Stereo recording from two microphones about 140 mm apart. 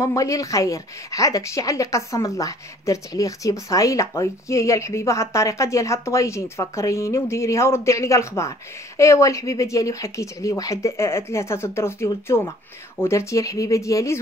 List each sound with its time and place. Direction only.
0.0 s speech: 25° left (ahead or behind)